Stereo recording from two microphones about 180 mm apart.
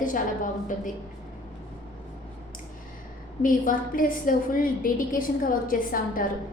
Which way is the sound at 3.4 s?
50° left (ahead or behind).